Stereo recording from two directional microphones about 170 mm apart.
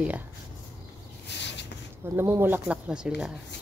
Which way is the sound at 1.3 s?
90° left.